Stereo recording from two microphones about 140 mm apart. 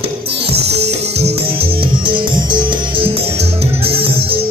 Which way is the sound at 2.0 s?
35° right (ahead or behind).